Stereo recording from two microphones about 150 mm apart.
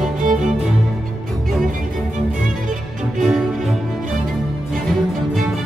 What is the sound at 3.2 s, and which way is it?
Music, centre (ahead or behind).